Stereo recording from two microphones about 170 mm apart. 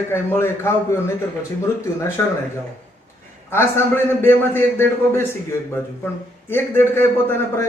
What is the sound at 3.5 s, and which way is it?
A man's voice, 15° left (ahead or behind).